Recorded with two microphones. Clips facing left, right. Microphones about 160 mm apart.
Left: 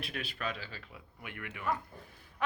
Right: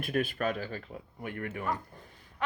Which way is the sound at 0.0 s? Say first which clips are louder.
Right 9 dB; 50° right (ahead or behind).